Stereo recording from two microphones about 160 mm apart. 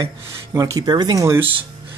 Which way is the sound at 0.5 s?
20° right (ahead or behind).